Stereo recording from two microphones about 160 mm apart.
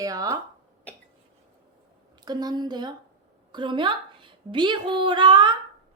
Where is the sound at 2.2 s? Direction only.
25° right (ahead or behind).